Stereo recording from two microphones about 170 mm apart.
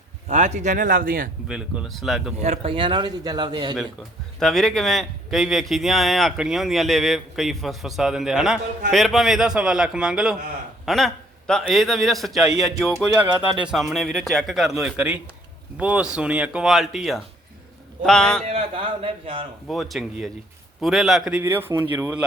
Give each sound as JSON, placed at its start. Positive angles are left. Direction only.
{"t": 0.3, "sound": "speech", "side_deg": -40}
{"t": 1.5, "sound": "a man's voice", "side_deg": -5}
{"t": 2.4, "sound": "a man's voice", "side_deg": -35}
{"t": 4.4, "sound": "a man's voice", "side_deg": 5}
{"t": 18.4, "sound": "speech", "side_deg": -35}
{"t": 19.6, "sound": "a man's voice", "side_deg": 0}